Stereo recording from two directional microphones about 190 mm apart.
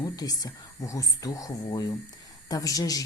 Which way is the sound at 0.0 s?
20° left (ahead or behind).